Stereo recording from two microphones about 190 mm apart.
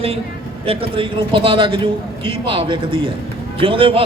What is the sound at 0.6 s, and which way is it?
A man's voice, 30° right (ahead or behind).